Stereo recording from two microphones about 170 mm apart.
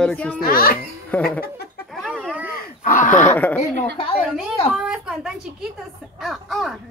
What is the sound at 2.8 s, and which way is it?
Speech, 50° left (ahead or behind).